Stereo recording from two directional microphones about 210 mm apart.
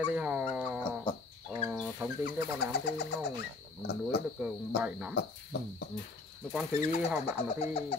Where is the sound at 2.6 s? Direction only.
50° left (ahead or behind).